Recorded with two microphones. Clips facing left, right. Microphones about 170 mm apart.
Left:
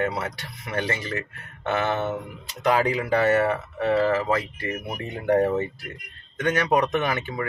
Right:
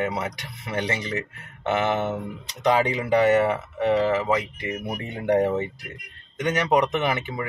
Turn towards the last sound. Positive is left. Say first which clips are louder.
# right 1 dB
turn(degrees=-20)  # may be behind; listen again after turning